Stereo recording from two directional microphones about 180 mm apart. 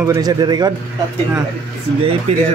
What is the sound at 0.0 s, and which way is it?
Speech, 20° right (ahead or behind).